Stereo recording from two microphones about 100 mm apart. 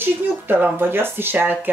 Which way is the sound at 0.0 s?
20° right (ahead or behind).